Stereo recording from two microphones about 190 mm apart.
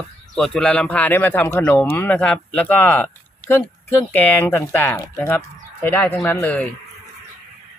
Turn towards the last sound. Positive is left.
turn(degrees=5)  # may be behind; listen again after turning